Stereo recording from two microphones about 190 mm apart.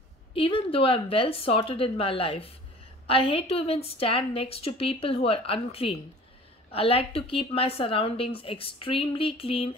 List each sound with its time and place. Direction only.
0.3 s a woman's voice: 30° left (ahead or behind)